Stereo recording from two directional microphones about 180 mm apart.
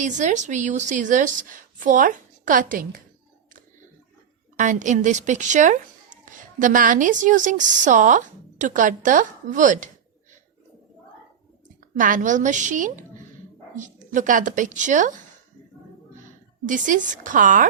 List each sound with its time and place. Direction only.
0.0 s a woman's voice: 45° right (ahead or behind)
4.5 s a woman's voice: 45° right (ahead or behind)
11.9 s a woman's voice: 45° right (ahead or behind)
16.6 s a woman's voice: 45° right (ahead or behind)